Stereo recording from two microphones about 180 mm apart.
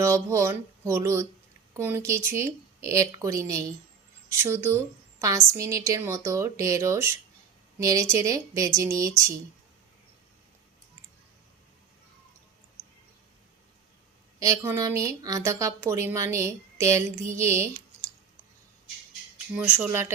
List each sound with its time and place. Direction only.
0.0 s a woman's voice: 15° right (ahead or behind)
14.3 s a woman's voice: 20° right (ahead or behind)
19.5 s a woman's voice: 10° right (ahead or behind)